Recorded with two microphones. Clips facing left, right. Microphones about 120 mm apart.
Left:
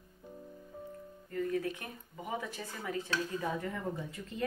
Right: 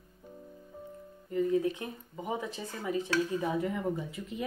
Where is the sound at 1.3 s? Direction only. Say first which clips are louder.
Right 6 dB; 20° right (ahead or behind).